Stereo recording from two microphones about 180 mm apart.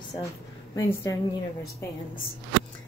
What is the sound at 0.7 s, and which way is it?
Speech, 20° left (ahead or behind).